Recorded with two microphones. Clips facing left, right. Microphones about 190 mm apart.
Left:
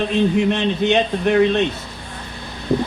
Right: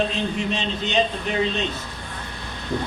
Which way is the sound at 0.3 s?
60° left (ahead or behind).